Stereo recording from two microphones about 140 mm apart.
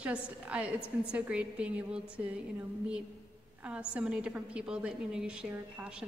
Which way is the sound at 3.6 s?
10° right (ahead or behind).